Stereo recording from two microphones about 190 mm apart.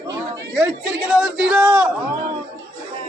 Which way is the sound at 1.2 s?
5° right (ahead or behind).